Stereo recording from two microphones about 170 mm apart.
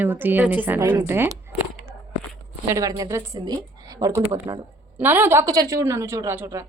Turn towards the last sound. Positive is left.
turn(degrees=-15)  # may be behind; listen again after turning